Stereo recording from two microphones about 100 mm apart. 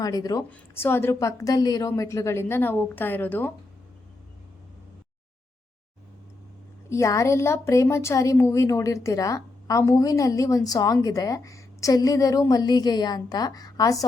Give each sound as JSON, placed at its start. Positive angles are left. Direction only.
{"t": 0.0, "sound": "speech", "side_deg": 40}
{"t": 0.7, "sound": "a woman's voice", "side_deg": 25}
{"t": 6.9, "sound": "speech", "side_deg": 30}